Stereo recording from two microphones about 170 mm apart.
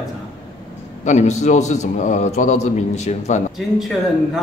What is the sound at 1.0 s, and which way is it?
A man's voice, 45° left (ahead or behind).